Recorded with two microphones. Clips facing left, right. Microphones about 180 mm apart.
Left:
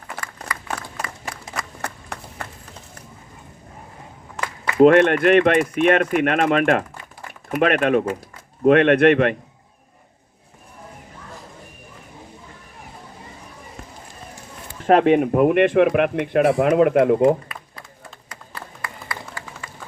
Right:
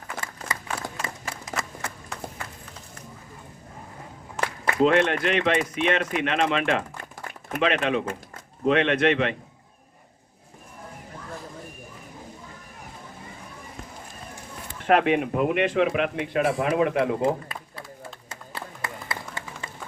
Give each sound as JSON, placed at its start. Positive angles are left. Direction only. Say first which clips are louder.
{"t": 1.8, "sound": "clapping", "louder": "left 2 dB", "side_deg": 60}
{"t": 4.8, "sound": "speech", "louder": "left 8 dB", "side_deg": 55}
{"t": 14.8, "sound": "speech", "louder": "left 6 dB", "side_deg": 35}
{"t": 17.5, "sound": "applause", "louder": "right 1 dB", "side_deg": -25}